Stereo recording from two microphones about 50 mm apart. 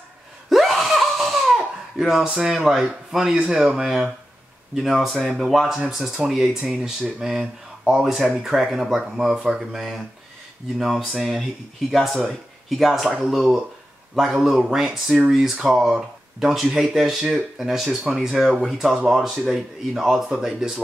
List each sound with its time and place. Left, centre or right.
0.5 s belly laugh: centre
2.4 s speech: centre
10.8 s speech: centre